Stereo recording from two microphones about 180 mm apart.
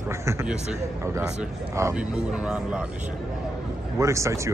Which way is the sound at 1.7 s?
15° right (ahead or behind).